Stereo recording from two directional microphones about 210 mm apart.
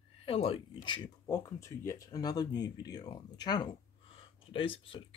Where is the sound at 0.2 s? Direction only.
25° left (ahead or behind).